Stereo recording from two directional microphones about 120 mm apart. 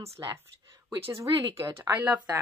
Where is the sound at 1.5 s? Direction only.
25° right (ahead or behind).